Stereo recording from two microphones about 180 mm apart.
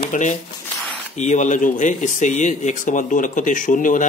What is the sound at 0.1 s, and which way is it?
Speech, 45° left (ahead or behind).